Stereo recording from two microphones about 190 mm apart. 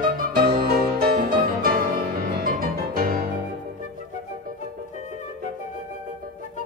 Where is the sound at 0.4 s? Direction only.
50° right (ahead or behind).